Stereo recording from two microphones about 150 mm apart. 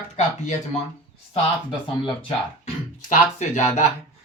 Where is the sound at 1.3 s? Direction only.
35° left (ahead or behind).